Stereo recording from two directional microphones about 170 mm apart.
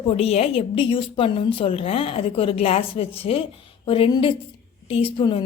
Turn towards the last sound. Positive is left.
turn(degrees=30)  # may be behind; listen again after turning